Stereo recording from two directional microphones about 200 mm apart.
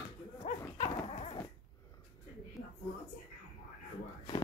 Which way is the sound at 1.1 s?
30° left (ahead or behind).